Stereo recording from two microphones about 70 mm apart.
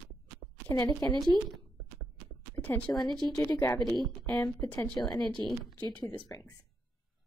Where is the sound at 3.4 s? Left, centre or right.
Left.